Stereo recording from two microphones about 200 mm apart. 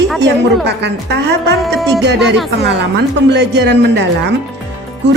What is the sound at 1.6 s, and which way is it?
Music, centre (ahead or behind).